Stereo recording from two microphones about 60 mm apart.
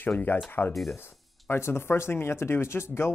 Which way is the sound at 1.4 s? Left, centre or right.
Left.